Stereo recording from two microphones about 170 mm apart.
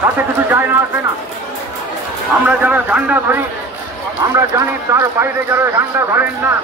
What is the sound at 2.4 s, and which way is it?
A man's voice, 10° right (ahead or behind).